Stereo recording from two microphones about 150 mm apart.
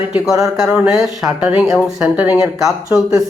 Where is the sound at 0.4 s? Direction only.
5° right (ahead or behind).